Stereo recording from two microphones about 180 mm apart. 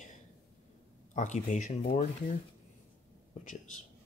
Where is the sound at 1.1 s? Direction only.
45° left (ahead or behind).